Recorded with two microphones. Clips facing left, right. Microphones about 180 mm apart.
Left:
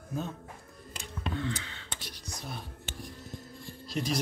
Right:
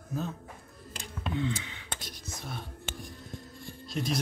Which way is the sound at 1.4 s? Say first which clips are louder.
Right 6 dB; 20° right (ahead or behind).